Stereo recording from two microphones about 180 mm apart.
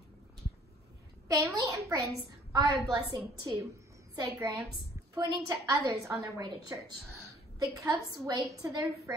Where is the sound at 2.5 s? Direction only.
20° right (ahead or behind).